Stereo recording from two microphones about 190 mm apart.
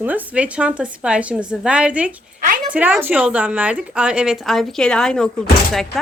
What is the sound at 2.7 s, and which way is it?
A woman's voice, 10° right (ahead or behind).